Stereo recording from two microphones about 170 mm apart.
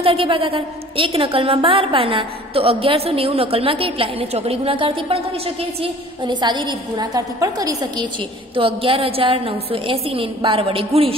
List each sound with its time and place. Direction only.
0.0 s a woman's voice: 35° right (ahead or behind)
8.5 s a woman's voice: 30° right (ahead or behind)